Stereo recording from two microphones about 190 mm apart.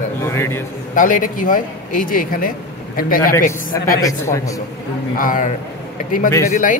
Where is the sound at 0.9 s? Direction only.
45° left (ahead or behind).